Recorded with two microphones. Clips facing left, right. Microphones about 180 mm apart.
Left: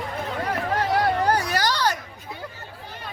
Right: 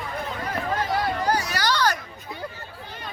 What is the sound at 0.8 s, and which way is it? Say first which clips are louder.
Hubbub: left 5 dB; 60° left (ahead or behind).